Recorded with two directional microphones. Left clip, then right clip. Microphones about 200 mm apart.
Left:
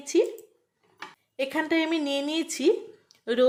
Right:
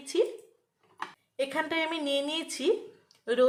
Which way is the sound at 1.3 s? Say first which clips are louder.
Left 3 dB; 25° left (ahead or behind).